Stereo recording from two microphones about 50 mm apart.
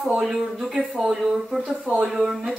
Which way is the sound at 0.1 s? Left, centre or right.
Centre.